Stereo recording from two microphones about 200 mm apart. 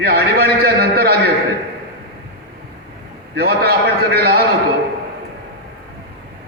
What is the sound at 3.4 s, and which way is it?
A man's voice, 55° right (ahead or behind).